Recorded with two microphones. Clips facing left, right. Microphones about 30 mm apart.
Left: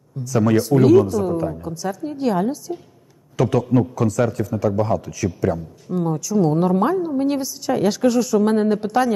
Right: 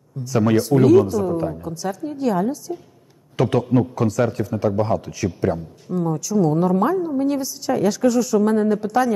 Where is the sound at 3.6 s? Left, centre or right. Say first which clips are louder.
Even; centre.